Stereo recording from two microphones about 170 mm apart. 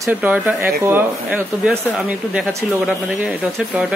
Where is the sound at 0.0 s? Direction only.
10° right (ahead or behind).